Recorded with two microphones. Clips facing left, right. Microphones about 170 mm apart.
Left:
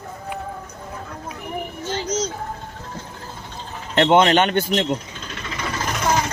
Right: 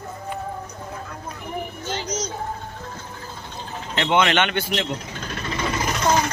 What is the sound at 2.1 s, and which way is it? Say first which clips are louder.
Vehicle: left 6 dB; 25° left (ahead or behind).